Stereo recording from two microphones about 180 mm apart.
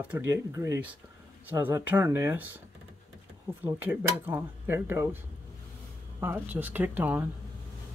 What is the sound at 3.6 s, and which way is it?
Speech, 10° right (ahead or behind).